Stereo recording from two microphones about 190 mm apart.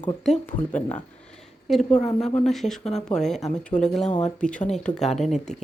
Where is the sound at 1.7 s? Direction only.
Centre (ahead or behind).